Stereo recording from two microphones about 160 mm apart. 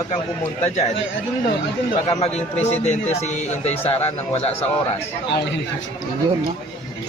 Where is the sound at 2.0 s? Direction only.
40° left (ahead or behind).